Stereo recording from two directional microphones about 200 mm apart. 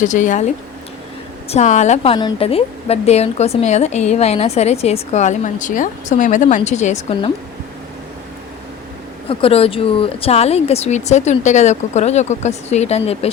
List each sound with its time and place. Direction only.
0.0 s a woman's voice: 40° left (ahead or behind)
9.3 s a woman's voice: 30° left (ahead or behind)